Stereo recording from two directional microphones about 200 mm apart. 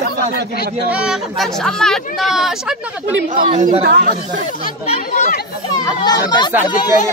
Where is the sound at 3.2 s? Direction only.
40° right (ahead or behind).